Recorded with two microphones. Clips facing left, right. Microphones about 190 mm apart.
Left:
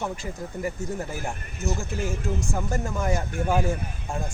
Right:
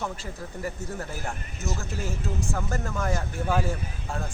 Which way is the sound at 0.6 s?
15° left (ahead or behind).